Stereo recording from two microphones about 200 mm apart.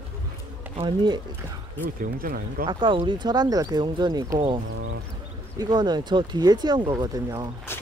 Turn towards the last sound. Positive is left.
turn(degrees=10)  # may be behind; listen again after turning